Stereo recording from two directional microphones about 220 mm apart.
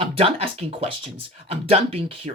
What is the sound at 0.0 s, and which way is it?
Speech, 25° right (ahead or behind).